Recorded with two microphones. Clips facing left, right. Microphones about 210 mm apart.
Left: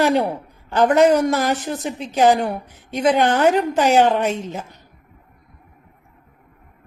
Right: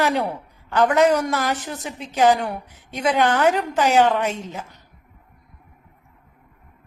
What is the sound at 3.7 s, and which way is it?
Speech, 20° left (ahead or behind).